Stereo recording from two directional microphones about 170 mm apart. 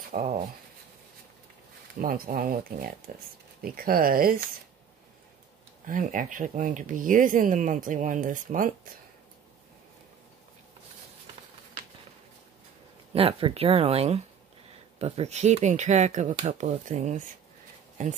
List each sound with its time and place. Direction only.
0.1 s a sound: 45° right (ahead or behind)
2.0 s speech: 55° right (ahead or behind)
5.9 s speech: 50° right (ahead or behind)
13.1 s speech: 35° right (ahead or behind)